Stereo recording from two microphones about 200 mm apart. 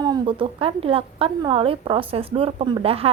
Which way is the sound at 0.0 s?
25° right (ahead or behind).